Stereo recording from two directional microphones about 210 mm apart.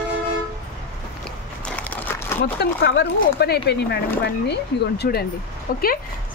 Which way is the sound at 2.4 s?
50° left (ahead or behind).